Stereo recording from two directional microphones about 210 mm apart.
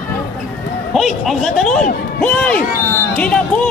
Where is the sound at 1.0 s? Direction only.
Centre (ahead or behind).